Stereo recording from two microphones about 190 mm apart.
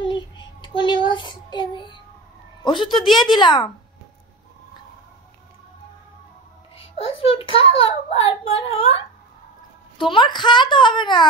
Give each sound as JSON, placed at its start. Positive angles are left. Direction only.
{"t": 0.0, "sound": "child singing", "side_deg": 25}
{"t": 2.6, "sound": "a child's voice", "side_deg": 25}
{"t": 7.0, "sound": "a child's voice", "side_deg": 30}